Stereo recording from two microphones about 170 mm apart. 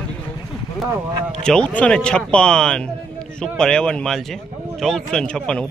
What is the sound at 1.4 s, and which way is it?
Speech, 5° left (ahead or behind).